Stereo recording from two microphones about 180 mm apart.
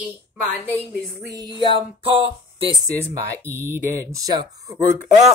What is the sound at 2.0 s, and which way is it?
Speech, 30° right (ahead or behind).